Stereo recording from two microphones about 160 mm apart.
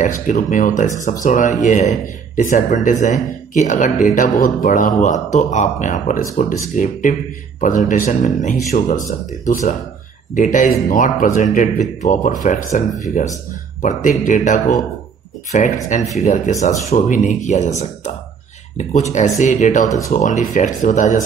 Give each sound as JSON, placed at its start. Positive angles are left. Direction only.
{"t": 0.0, "sound": "speech", "side_deg": 55}